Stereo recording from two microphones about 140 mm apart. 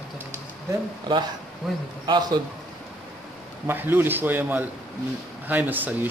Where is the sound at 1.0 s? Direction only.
30° right (ahead or behind).